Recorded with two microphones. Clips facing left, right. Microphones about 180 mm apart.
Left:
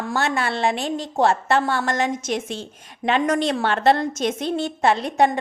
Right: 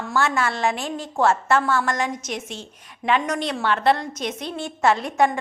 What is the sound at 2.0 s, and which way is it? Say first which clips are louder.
Speech: left 4 dB; 25° left (ahead or behind).